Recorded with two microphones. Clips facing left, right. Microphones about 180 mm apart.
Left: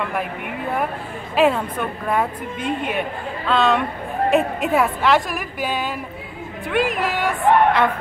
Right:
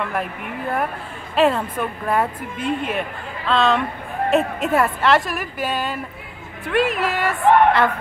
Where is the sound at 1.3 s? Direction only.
Centre (ahead or behind).